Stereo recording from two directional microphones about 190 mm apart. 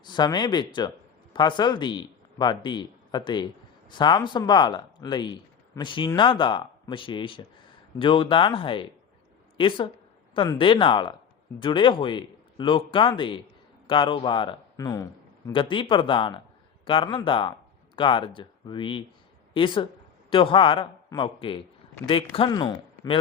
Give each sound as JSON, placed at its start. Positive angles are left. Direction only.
{"t": 0.0, "sound": "a man's voice", "side_deg": 25}